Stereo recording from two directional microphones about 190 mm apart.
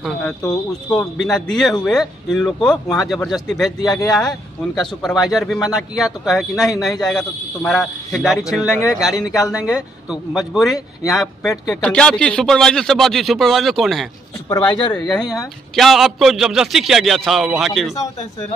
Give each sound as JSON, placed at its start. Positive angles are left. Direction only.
{"t": 0.8, "sound": "a man's voice", "side_deg": 0}
{"t": 3.8, "sound": "speech", "side_deg": 20}
{"t": 4.1, "sound": "a man's voice", "side_deg": 0}
{"t": 14.5, "sound": "a man's voice", "side_deg": 10}